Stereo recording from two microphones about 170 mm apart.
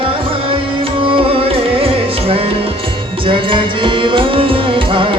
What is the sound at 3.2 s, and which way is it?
Music, 30° right (ahead or behind).